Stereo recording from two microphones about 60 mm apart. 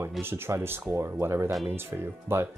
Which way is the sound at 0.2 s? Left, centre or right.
Right.